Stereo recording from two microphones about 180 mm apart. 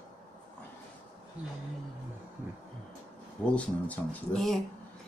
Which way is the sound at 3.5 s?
10° left (ahead or behind).